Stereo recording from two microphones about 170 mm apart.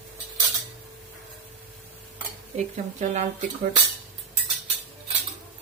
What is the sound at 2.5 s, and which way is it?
Speech, 45° right (ahead or behind).